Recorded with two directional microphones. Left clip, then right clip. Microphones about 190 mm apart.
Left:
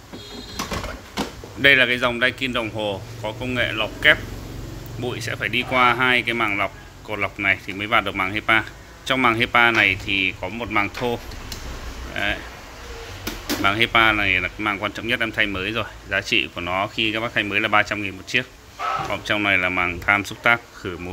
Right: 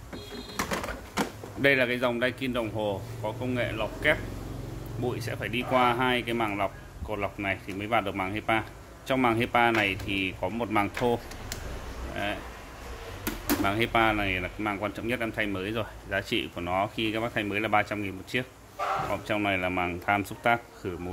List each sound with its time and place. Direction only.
1.1 s speech: 10° right (ahead or behind)
13.6 s speech: 5° right (ahead or behind)